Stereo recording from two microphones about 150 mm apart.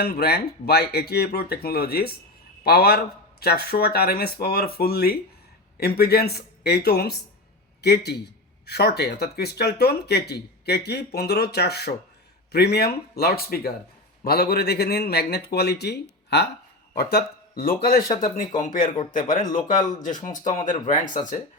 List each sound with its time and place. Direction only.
0.0 s a man's voice: 90° left
18.2 s speech: 60° left (ahead or behind)